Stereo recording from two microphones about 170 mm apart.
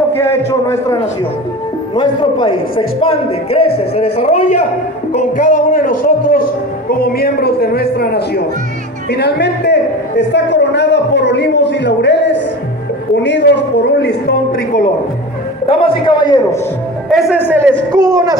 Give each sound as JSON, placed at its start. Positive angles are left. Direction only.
{"t": 0.5, "sound": "a man's voice", "side_deg": 15}
{"t": 2.0, "sound": "a man's voice", "side_deg": 30}
{"t": 5.1, "sound": "a man's voice", "side_deg": 55}
{"t": 9.1, "sound": "a man's voice", "side_deg": 85}
{"t": 15.6, "sound": "a man's voice", "side_deg": 35}
{"t": 17.5, "sound": "a man's voice", "side_deg": -10}